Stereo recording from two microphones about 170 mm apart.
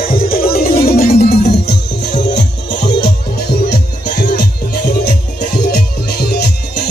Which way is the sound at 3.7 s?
75° left (ahead or behind).